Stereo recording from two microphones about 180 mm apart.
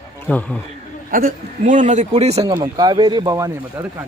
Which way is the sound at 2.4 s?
20° right (ahead or behind).